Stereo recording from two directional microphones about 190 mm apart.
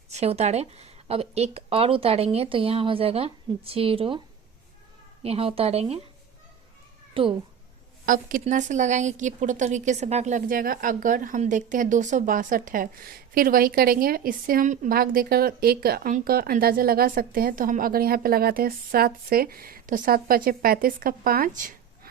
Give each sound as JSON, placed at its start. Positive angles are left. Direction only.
{"t": 0.1, "sound": "speech", "side_deg": -35}
{"t": 5.2, "sound": "speech", "side_deg": -30}
{"t": 7.1, "sound": "speech", "side_deg": -30}
{"t": 8.0, "sound": "speech", "side_deg": -45}